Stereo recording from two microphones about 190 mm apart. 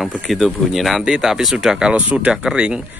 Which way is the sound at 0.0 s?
Centre (ahead or behind).